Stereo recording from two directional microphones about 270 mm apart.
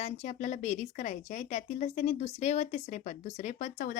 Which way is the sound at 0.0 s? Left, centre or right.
Left.